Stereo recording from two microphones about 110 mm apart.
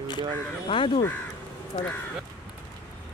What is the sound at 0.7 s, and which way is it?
Speech, 55° left (ahead or behind).